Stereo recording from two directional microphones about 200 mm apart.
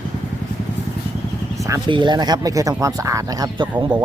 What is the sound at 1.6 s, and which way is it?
Speech, 20° right (ahead or behind).